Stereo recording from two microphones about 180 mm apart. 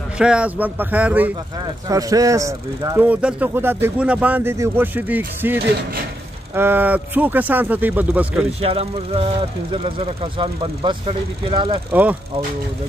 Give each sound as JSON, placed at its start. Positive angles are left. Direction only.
{"t": 0.2, "sound": "speech", "side_deg": -5}
{"t": 1.9, "sound": "speech", "side_deg": -20}
{"t": 8.5, "sound": "speech", "side_deg": -35}
{"t": 11.9, "sound": "speech", "side_deg": -10}